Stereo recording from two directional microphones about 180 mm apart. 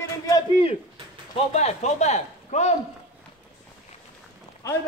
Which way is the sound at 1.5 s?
40° left (ahead or behind).